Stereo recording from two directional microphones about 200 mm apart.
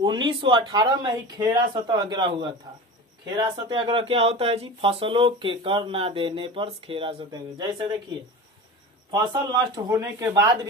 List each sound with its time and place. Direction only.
0.0 s speech: 20° right (ahead or behind)
9.1 s speech: 20° right (ahead or behind)